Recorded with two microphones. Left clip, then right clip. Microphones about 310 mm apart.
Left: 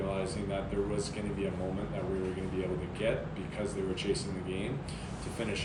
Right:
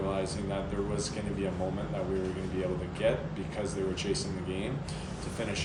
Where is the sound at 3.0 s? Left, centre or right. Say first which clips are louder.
Right 4 dB; centre.